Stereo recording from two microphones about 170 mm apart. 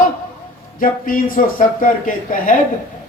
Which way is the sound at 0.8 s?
55° left (ahead or behind).